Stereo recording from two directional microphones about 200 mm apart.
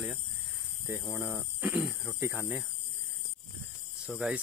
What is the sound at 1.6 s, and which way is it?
Speech, 5° right (ahead or behind).